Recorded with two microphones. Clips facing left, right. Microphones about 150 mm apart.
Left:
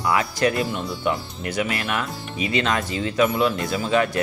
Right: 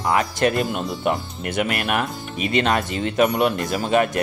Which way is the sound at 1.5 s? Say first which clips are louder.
Right 3 dB; 60° right (ahead or behind).